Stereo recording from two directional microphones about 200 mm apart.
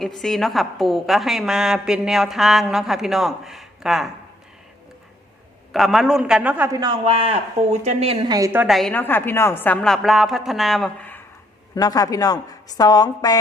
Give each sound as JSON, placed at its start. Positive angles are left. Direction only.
{"t": 0.0, "sound": "a woman's voice", "side_deg": 0}
{"t": 5.7, "sound": "a man's voice", "side_deg": 0}
{"t": 8.6, "sound": "a woman's voice", "side_deg": 0}
{"t": 11.7, "sound": "a woman's voice", "side_deg": 20}